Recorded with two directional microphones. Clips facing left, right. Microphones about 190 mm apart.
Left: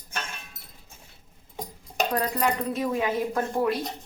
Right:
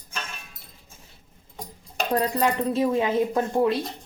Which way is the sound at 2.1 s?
30° right (ahead or behind).